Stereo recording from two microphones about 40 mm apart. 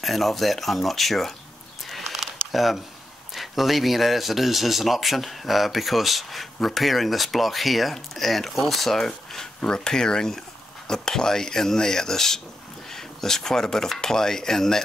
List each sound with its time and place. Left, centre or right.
0.0 s speech: centre
1.9 s a sound: centre
3.3 s speech: centre
9.6 s speech: left